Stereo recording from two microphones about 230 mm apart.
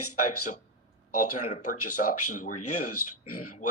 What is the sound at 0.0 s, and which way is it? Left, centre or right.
A man's voice, left.